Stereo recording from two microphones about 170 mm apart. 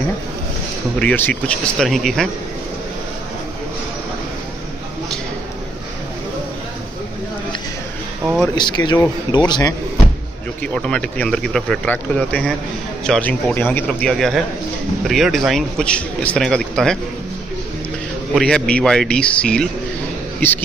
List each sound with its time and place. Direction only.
0.9 s speech: 10° left (ahead or behind)
8.5 s speech: 25° left (ahead or behind)
10.6 s a man's voice: 5° left (ahead or behind)
18.3 s speech: 5° left (ahead or behind)